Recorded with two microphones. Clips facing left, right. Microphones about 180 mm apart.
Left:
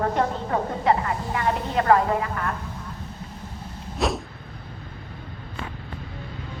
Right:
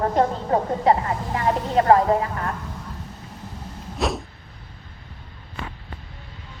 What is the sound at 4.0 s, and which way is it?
Vehicle, centre (ahead or behind).